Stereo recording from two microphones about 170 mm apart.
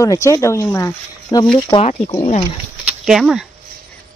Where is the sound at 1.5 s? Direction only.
35° left (ahead or behind).